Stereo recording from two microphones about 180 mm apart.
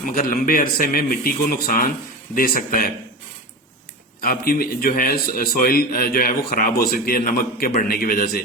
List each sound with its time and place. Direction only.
0.0 s a man's voice: 50° left (ahead or behind)
4.2 s a man's voice: 55° left (ahead or behind)